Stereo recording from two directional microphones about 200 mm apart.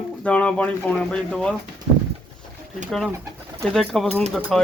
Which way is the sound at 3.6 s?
Centre (ahead or behind).